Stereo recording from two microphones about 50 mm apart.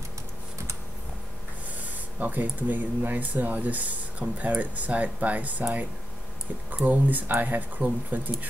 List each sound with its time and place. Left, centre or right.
2.1 s speech: right
6.7 s speech: right